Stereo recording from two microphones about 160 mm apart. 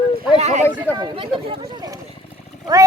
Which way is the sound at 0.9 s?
30° right (ahead or behind).